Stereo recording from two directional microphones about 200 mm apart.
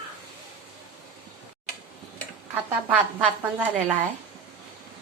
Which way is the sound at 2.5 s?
10° right (ahead or behind).